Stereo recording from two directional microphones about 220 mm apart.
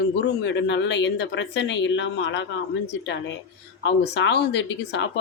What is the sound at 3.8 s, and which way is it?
Speech, 55° left (ahead or behind).